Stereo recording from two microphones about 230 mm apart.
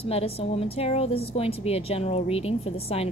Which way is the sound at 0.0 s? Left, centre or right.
Left.